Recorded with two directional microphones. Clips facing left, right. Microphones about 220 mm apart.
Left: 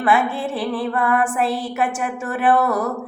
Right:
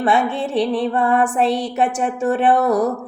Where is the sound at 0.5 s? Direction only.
5° left (ahead or behind).